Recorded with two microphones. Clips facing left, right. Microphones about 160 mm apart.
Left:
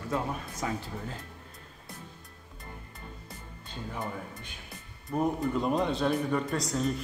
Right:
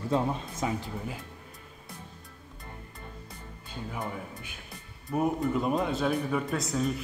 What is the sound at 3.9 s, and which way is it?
Speech, 5° right (ahead or behind).